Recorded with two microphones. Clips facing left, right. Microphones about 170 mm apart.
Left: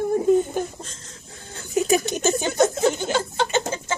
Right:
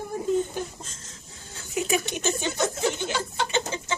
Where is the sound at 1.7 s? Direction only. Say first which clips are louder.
Left 6 dB; 40° left (ahead or behind).